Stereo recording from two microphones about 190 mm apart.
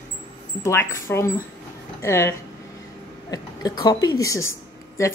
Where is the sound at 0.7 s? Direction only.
15° left (ahead or behind).